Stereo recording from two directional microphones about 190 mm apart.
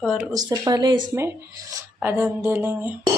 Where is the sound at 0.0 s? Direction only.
5° right (ahead or behind).